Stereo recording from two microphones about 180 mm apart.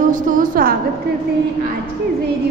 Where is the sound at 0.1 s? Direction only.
50° right (ahead or behind).